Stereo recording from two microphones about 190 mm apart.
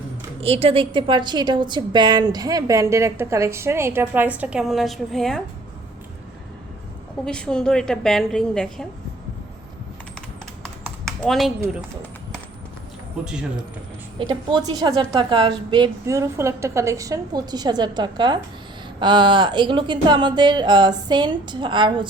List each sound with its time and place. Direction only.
0.4 s a woman's voice: 30° right (ahead or behind); by 5.4 s centre (ahead or behind)
7.3 s a woman's voice: 5° left (ahead or behind)
11.0 s a sound: centre (ahead or behind)
14.2 s a woman's voice: 20° right (ahead or behind)